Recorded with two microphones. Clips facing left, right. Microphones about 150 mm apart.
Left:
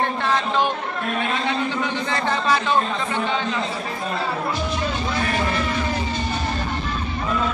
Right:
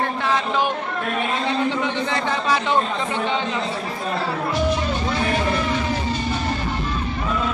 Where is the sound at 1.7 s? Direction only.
20° right (ahead or behind).